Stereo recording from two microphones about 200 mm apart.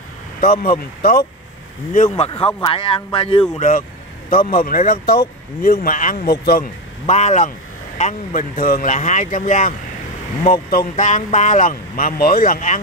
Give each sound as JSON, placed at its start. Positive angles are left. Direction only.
{"t": 0.4, "sound": "speech", "side_deg": 50}
{"t": 2.0, "sound": "speech", "side_deg": 30}
{"t": 3.5, "sound": "speech", "side_deg": 40}
{"t": 7.1, "sound": "speech", "side_deg": 35}